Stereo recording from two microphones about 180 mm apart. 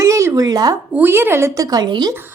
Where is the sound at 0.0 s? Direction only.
15° right (ahead or behind).